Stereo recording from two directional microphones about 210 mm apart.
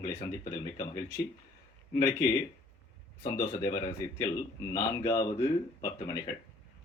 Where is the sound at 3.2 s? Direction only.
15° left (ahead or behind).